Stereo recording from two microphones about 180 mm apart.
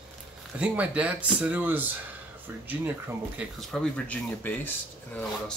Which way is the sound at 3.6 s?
5° left (ahead or behind).